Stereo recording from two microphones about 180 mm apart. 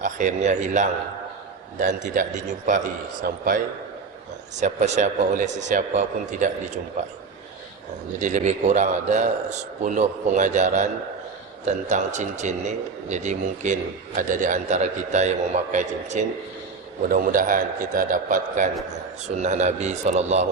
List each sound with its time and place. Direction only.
0.0 s a man's voice: 45° right (ahead or behind)
8.2 s a man's voice: 45° right (ahead or behind)